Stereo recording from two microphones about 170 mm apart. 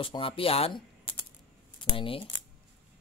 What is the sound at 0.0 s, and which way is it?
Speech, 30° left (ahead or behind).